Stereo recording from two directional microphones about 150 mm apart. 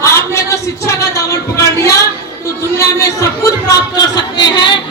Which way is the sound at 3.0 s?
20° left (ahead or behind).